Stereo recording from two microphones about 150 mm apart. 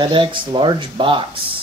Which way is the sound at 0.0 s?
35° right (ahead or behind).